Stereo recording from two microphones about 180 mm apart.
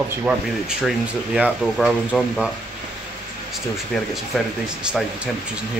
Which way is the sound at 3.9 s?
Centre (ahead or behind).